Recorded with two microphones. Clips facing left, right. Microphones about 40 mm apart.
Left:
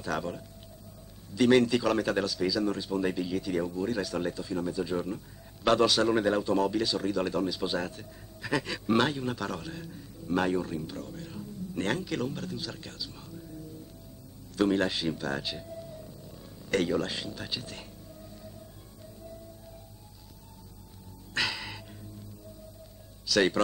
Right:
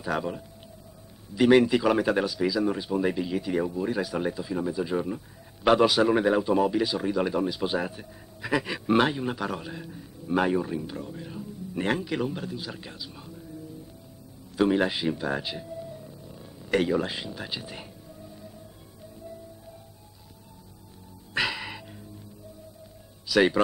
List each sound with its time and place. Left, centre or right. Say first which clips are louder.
0.0 s speech: right 3 dB; centre
14.5 s a sound: right 3 dB; centre
21.4 s music: right 3 dB; centre
23.2 s speech: right 4 dB; centre